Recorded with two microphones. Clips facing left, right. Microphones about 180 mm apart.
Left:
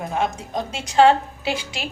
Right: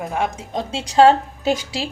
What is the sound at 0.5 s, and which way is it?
A woman's voice, 30° right (ahead or behind).